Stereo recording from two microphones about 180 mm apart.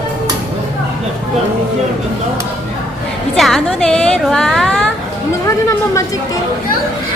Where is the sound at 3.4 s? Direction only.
Centre (ahead or behind).